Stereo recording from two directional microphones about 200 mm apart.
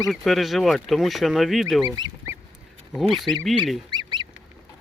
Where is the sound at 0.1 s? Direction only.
Centre (ahead or behind).